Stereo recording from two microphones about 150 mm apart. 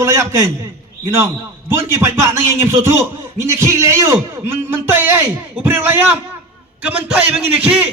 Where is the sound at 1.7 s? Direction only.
15° right (ahead or behind).